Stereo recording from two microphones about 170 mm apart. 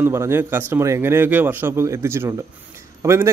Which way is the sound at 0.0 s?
15° right (ahead or behind).